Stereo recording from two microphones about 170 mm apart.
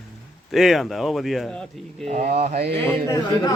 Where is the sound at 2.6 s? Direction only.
80° right.